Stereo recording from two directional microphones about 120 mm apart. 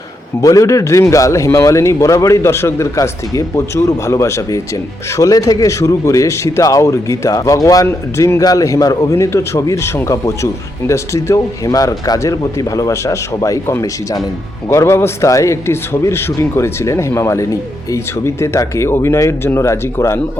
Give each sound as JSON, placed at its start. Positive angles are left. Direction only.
{"t": 0.4, "sound": "speech", "side_deg": 25}